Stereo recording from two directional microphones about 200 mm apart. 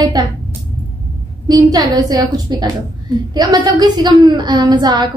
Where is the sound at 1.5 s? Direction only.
20° right (ahead or behind).